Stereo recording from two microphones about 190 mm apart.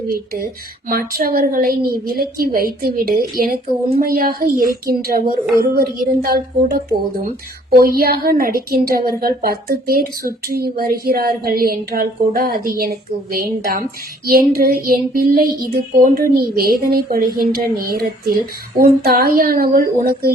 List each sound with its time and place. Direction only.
0.9 s a woman's voice: 50° right (ahead or behind)